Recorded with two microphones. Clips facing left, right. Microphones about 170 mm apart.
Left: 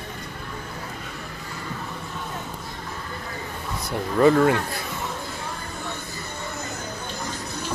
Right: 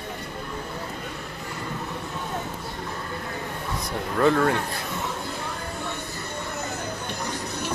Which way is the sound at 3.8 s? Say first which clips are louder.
Left 4 dB; 10° left (ahead or behind).